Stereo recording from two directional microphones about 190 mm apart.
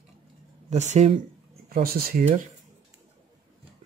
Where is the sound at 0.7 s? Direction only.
35° right (ahead or behind).